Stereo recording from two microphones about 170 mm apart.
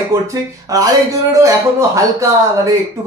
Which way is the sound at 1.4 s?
20° right (ahead or behind).